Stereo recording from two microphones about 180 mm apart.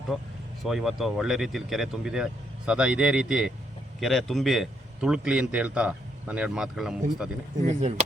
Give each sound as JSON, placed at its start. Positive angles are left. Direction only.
{"t": 0.6, "sound": "a man's voice", "side_deg": 0}
{"t": 7.7, "sound": "speech", "side_deg": -40}